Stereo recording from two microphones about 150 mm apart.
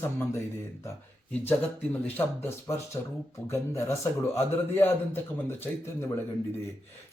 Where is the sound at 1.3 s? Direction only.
10° left (ahead or behind).